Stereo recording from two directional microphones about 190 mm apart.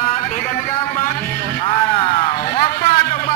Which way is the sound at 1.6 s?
30° left (ahead or behind).